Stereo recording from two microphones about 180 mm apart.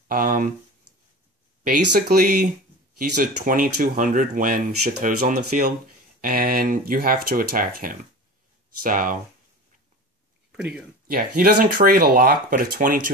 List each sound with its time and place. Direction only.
0.1 s speech: 50° right (ahead or behind)
1.6 s speech: 55° right (ahead or behind)
11.1 s speech: 55° right (ahead or behind)